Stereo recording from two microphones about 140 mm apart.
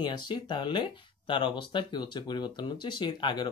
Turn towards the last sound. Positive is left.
turn(degrees=35)  # may be behind; listen again after turning